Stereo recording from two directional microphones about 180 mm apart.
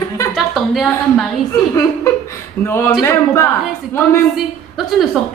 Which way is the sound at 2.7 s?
15° left (ahead or behind).